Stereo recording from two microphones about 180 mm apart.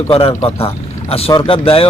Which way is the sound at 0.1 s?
30° left (ahead or behind).